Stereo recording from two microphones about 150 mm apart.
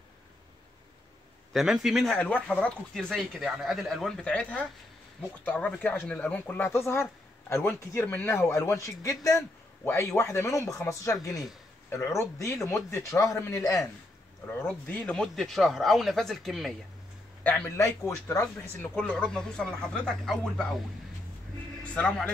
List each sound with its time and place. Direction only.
1.5 s speech: centre (ahead or behind); by 13.8 s 20° left (ahead or behind)
14.6 s speech: 10° left (ahead or behind)
21.9 s speech: 5° left (ahead or behind)